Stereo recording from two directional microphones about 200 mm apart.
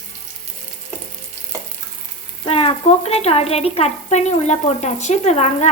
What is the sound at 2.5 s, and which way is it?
A woman's voice, 30° left (ahead or behind).